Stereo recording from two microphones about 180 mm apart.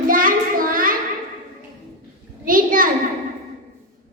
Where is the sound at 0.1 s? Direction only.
50° right (ahead or behind).